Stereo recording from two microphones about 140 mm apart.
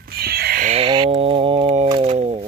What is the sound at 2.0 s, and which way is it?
Speech, 50° right (ahead or behind).